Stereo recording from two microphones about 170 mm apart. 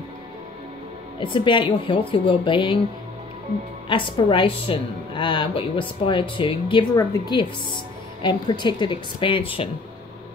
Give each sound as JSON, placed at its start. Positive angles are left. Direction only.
{"t": 1.2, "sound": "a woman's voice", "side_deg": 30}
{"t": 3.9, "sound": "a woman's voice", "side_deg": 30}